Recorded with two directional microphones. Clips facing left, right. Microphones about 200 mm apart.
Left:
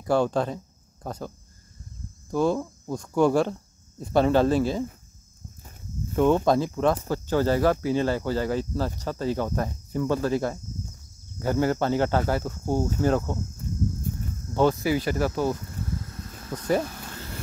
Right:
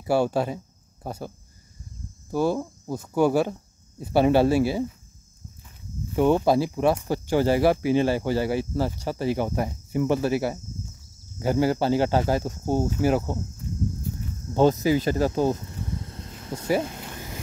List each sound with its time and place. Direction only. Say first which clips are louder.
0.0 s speech: even; 10° right (ahead or behind)
2.3 s speech: even; 5° right (ahead or behind)
6.1 s speech: right 1 dB; 10° right (ahead or behind)
12.8 s speech: even; 10° right (ahead or behind)
14.5 s speech: right 3 dB; 20° right (ahead or behind)
16.8 s a sound: right 2 dB; 20° right (ahead or behind)